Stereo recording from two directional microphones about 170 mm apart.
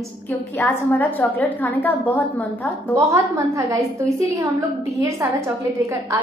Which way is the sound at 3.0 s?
15° right (ahead or behind).